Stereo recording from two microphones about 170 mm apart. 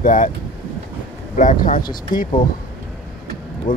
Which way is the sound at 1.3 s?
50° left (ahead or behind).